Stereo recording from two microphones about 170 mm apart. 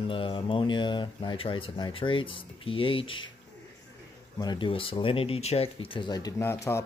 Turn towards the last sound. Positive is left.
turn(degrees=15)  # may be behind; listen again after turning